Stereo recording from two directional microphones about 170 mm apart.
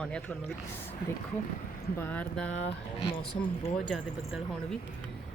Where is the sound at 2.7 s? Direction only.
35° left (ahead or behind).